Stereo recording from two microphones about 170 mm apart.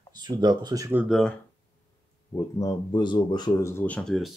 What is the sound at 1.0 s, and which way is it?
Speech, centre (ahead or behind).